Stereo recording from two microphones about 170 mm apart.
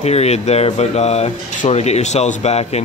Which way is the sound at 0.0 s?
40° left (ahead or behind).